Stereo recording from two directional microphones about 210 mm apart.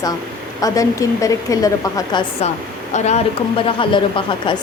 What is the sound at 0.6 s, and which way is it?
A woman's voice, 15° left (ahead or behind).